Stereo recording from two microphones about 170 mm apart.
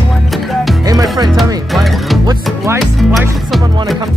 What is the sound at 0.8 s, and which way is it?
Music, 20° right (ahead or behind).